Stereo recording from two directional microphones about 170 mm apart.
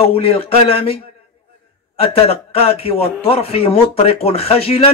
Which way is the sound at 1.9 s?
35° left (ahead or behind).